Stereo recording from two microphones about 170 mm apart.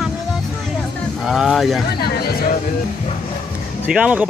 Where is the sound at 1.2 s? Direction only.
5° right (ahead or behind).